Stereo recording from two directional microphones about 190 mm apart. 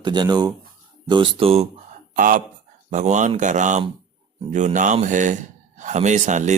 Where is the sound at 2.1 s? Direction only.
45° right (ahead or behind).